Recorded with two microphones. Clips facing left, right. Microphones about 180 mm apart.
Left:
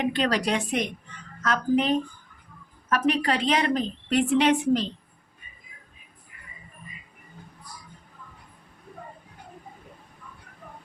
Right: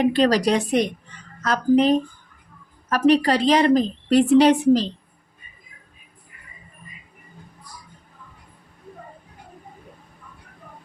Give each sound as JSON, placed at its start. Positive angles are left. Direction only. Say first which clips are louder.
{"t": 0.0, "sound": "a woman's voice", "louder": "right 7 dB", "side_deg": -35}